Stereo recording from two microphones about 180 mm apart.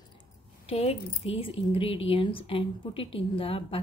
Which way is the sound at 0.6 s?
35° left (ahead or behind).